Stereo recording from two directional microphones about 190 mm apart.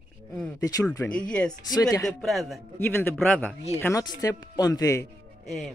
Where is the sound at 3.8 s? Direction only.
20° left (ahead or behind).